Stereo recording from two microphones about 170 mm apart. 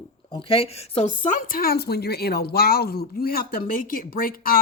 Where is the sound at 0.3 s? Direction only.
30° left (ahead or behind).